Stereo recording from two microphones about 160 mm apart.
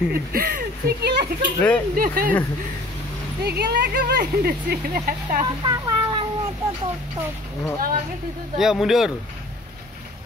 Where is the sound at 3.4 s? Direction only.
80° right; by 5.4 s 65° right (ahead or behind).